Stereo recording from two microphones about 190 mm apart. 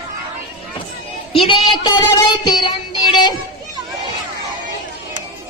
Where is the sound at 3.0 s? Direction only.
25° left (ahead or behind).